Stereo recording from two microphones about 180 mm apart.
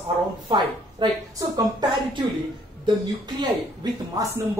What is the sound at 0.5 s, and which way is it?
Speech, 30° right (ahead or behind).